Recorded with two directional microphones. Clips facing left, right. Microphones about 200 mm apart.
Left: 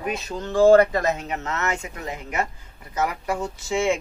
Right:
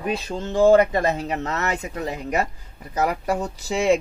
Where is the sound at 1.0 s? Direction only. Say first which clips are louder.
Right 2 dB; 35° right (ahead or behind).